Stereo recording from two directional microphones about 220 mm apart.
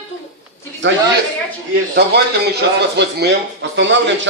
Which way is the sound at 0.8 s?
55° right (ahead or behind).